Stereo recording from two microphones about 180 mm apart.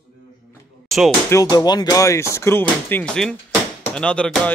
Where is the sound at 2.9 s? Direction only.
5° left (ahead or behind).